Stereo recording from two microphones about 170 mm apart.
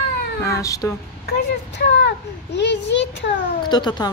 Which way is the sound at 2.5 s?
90° left.